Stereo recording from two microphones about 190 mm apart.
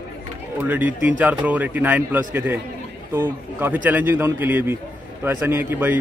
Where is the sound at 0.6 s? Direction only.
10° right (ahead or behind).